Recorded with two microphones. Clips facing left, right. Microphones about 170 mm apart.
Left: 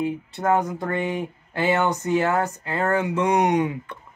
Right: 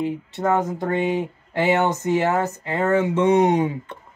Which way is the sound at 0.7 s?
20° right (ahead or behind).